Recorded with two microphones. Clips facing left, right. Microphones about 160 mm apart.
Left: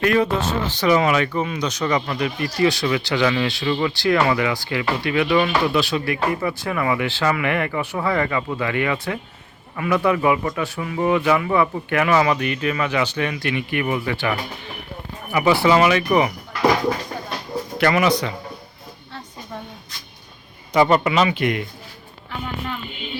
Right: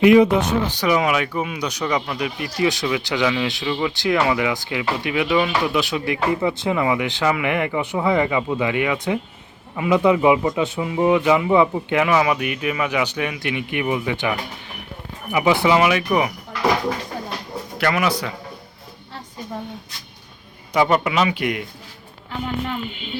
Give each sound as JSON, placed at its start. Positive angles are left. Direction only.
{"t": 0.0, "sound": "speech", "side_deg": -15}
{"t": 17.7, "sound": "speech", "side_deg": 0}
{"t": 20.7, "sound": "speech", "side_deg": -5}